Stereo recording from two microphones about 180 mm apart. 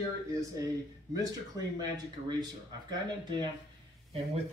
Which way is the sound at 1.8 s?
20° right (ahead or behind).